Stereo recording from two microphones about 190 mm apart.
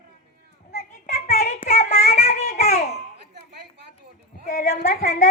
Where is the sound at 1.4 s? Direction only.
50° left (ahead or behind).